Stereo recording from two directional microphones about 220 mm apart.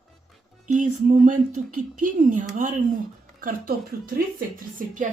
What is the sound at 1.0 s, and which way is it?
A woman's voice, 35° right (ahead or behind).